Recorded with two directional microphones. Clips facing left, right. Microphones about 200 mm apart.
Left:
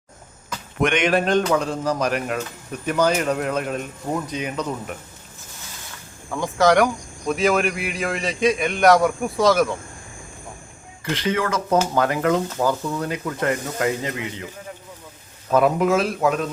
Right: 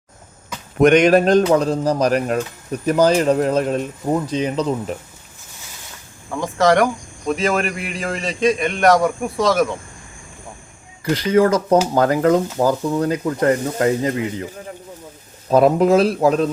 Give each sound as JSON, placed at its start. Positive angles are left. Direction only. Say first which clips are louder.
{"t": 0.8, "sound": "speech", "louder": "right 8 dB", "side_deg": -40}
{"t": 6.3, "sound": "speech", "louder": "right 1 dB", "side_deg": 0}
{"t": 11.3, "sound": "speech", "louder": "right 7 dB", "side_deg": -35}
{"t": 15.4, "sound": "speech", "louder": "right 4 dB", "side_deg": -35}